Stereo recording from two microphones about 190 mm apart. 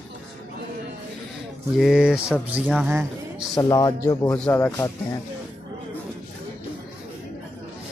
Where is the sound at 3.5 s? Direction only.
20° left (ahead or behind).